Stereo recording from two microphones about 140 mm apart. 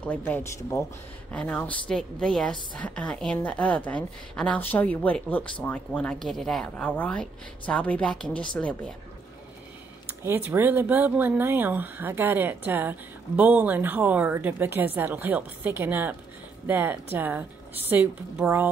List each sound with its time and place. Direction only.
0.0 s speech: 10° left (ahead or behind)
1.3 s speech: 10° left (ahead or behind)
10.2 s a woman's voice: 15° right (ahead or behind)